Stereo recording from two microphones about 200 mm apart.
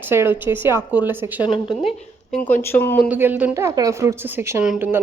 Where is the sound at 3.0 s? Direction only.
10° right (ahead or behind).